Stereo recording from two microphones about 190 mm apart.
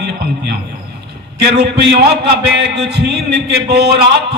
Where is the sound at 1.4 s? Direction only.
60° right (ahead or behind).